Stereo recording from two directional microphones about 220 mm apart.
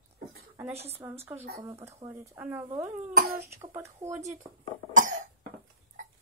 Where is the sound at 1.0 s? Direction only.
10° right (ahead or behind).